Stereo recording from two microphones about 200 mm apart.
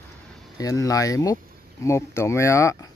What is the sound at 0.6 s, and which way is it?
Speech, 15° left (ahead or behind).